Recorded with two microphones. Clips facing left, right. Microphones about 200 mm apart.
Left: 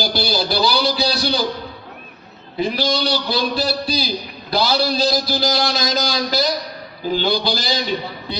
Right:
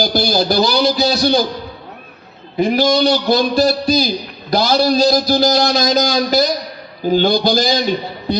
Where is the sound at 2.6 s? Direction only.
50° right (ahead or behind).